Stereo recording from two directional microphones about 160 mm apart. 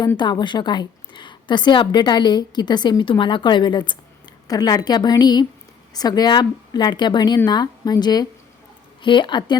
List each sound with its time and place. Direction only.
0.2 s a woman's voice: 30° left (ahead or behind)